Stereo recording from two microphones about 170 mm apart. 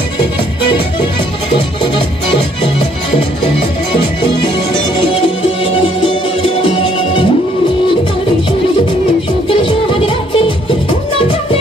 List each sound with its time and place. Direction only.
2.6 s music: 35° left (ahead or behind)
6.6 s music: 30° left (ahead or behind)
9.5 s music: 30° left (ahead or behind)